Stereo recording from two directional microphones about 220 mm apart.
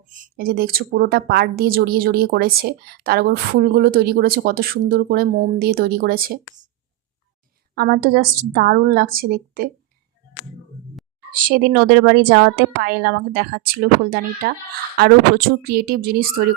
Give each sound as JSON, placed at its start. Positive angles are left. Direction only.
{"t": 0.1, "sound": "a woman's voice", "side_deg": -40}
{"t": 7.8, "sound": "a woman's voice", "side_deg": -45}
{"t": 11.4, "sound": "a woman's voice", "side_deg": -45}